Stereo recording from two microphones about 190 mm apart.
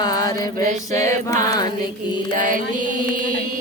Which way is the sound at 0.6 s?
40° right (ahead or behind).